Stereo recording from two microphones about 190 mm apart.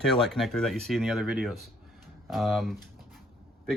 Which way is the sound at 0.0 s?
Centre (ahead or behind).